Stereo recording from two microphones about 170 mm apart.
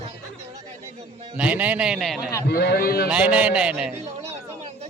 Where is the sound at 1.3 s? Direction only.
10° right (ahead or behind).